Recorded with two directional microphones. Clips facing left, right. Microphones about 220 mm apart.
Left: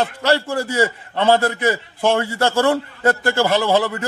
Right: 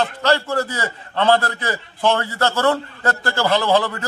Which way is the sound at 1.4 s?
25° left (ahead or behind).